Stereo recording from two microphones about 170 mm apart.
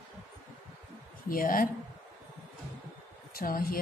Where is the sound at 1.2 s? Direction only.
55° left (ahead or behind).